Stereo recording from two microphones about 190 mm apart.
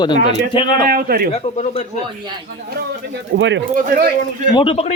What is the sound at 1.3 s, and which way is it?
Speech, 35° left (ahead or behind).